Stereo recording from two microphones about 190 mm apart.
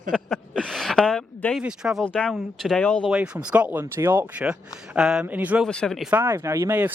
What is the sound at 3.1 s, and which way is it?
Speech, 5° right (ahead or behind).